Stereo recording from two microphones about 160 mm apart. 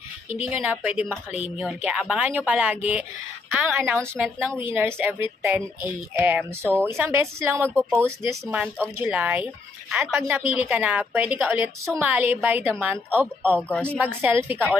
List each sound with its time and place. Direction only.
0.5 s a woman's voice: 10° right (ahead or behind)
8.5 s a woman's voice: 5° right (ahead or behind)
13.6 s speech: 5° left (ahead or behind)
14.2 s a woman's voice: 15° right (ahead or behind)